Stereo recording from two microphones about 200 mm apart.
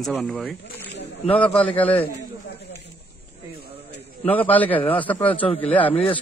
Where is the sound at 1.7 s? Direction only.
25° left (ahead or behind).